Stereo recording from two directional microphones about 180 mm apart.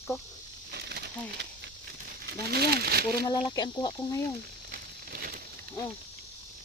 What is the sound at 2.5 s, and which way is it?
Speech, 60° right (ahead or behind).